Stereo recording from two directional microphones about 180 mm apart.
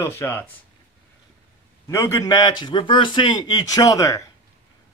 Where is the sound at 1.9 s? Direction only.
15° left (ahead or behind).